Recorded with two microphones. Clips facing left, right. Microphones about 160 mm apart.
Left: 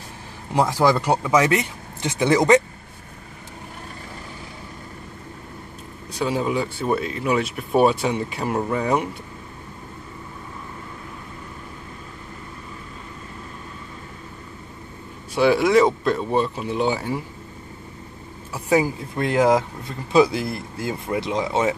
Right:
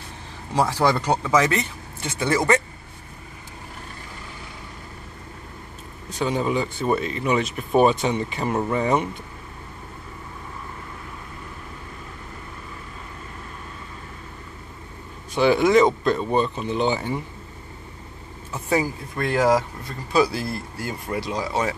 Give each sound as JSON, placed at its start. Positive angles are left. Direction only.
{"t": 0.6, "sound": "speech", "side_deg": 10}
{"t": 6.1, "sound": "speech", "side_deg": 5}
{"t": 15.3, "sound": "speech", "side_deg": 5}
{"t": 18.5, "sound": "speech", "side_deg": 15}